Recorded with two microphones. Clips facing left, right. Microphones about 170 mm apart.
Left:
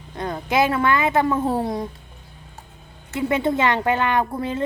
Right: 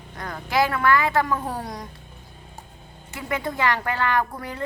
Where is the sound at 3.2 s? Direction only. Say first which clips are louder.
Left 6 dB; 25° left (ahead or behind).